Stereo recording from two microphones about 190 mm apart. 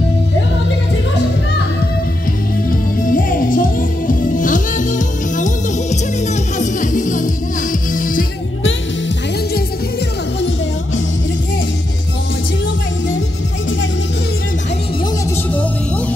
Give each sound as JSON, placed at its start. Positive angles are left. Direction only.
{"t": 2.7, "sound": "music", "side_deg": 45}